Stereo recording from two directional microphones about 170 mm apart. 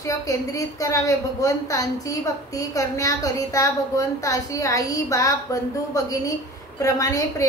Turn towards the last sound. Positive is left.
turn(degrees=20)  # may be behind; listen again after turning